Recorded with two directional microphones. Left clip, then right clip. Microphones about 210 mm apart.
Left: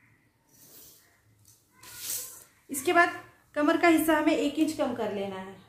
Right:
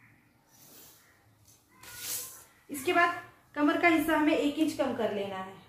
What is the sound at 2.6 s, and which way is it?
A woman's voice, 50° left (ahead or behind).